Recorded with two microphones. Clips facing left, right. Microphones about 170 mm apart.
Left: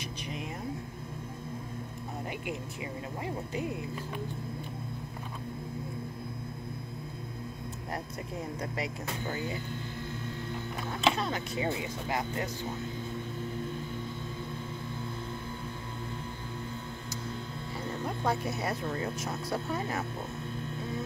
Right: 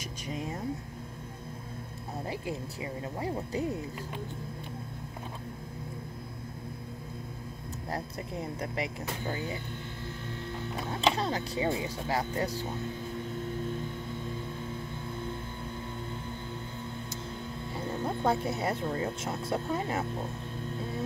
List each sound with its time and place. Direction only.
0.3 s vehicle: 35° right (ahead or behind)
2.4 s speech: 35° right (ahead or behind)
8.5 s speech: 30° right (ahead or behind)
10.9 s speech: 30° right (ahead or behind)
17.7 s speech: 25° right (ahead or behind)